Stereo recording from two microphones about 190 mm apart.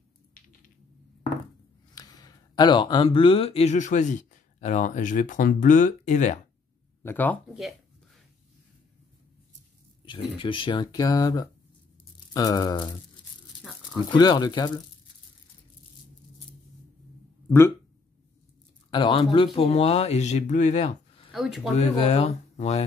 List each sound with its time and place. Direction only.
2.0 s speech: 20° left (ahead or behind); by 6.4 s 40° left (ahead or behind)
7.0 s speech: 10° left (ahead or behind)
10.0 s speech: 25° left (ahead or behind)
14.1 s speech: 20° left (ahead or behind)
17.5 s speech: 15° left (ahead or behind)
18.9 s speech: 25° left (ahead or behind)
21.3 s speech: centre (ahead or behind)
21.7 s speech: 35° left (ahead or behind)